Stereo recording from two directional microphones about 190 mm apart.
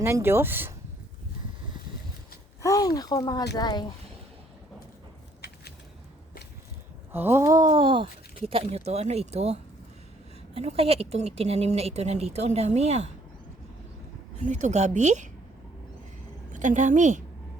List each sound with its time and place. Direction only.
0.0 s speech: 10° right (ahead or behind)
2.6 s speech: 15° left (ahead or behind)
7.1 s speech: 10° right (ahead or behind); by 13.1 s 35° right (ahead or behind)
14.3 s speech: 40° right (ahead or behind)
16.5 s a woman's voice: 40° right (ahead or behind)